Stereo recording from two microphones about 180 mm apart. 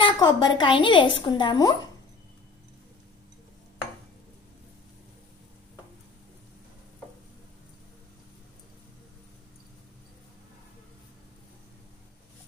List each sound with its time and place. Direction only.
0.0 s a woman's voice: 25° left (ahead or behind)